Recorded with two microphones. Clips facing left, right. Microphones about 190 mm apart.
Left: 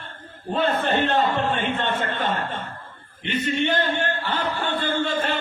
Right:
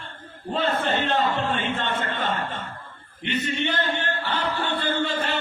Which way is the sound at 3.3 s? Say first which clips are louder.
Left 3 dB; 45° left (ahead or behind).